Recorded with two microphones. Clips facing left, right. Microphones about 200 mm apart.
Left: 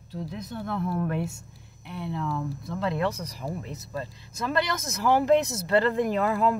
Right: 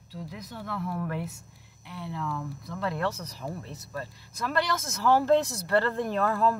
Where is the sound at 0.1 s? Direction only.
25° left (ahead or behind).